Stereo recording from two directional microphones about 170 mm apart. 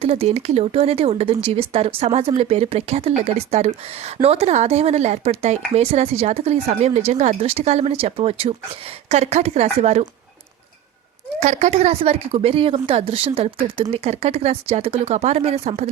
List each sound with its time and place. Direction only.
0.0 s speech: 35° right (ahead or behind)
11.3 s speech: 40° right (ahead or behind)